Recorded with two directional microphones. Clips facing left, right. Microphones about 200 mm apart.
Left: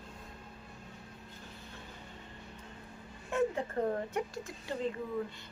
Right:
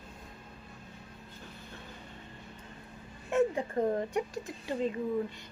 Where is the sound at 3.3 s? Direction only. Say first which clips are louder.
Right 4 dB; 15° right (ahead or behind).